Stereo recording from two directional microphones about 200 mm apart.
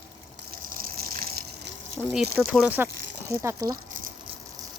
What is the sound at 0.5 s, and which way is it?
Gush, 45° right (ahead or behind).